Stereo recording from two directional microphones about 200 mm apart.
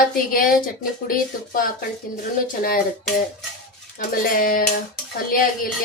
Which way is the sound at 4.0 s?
45° left (ahead or behind).